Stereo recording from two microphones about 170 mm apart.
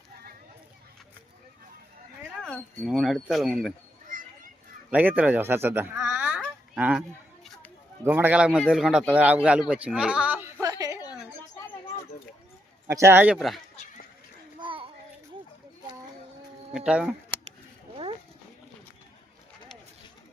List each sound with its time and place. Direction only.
2.4 s speech: centre (ahead or behind)
4.1 s children playing: 55° right (ahead or behind)
4.9 s speech: 10° right (ahead or behind)
8.0 s a man's voice: 10° right (ahead or behind)
12.9 s speech: 15° right (ahead or behind)
14.6 s child singing: 30° right (ahead or behind)
16.7 s speech: 5° right (ahead or behind)